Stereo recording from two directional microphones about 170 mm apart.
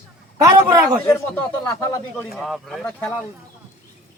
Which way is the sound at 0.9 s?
5° left (ahead or behind).